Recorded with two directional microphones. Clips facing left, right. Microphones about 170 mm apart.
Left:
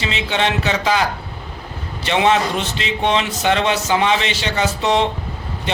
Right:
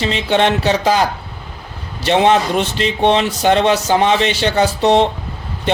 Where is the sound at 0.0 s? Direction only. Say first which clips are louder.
Right 5 dB; 50° right (ahead or behind).